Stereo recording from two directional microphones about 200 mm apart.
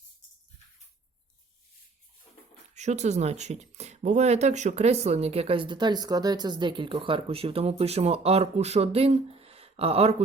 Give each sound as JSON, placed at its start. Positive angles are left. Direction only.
{"t": 2.7, "sound": "speech", "side_deg": -35}